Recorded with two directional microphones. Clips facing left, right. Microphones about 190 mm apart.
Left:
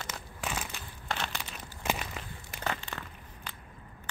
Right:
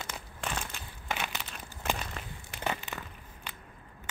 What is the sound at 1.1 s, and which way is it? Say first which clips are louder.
Crumpling: even; 10° right (ahead or behind).